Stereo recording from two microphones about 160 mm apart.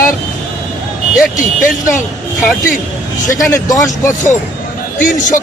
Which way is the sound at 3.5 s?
20° left (ahead or behind).